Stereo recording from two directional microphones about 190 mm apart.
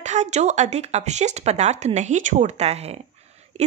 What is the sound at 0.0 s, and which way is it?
Speech, 40° right (ahead or behind).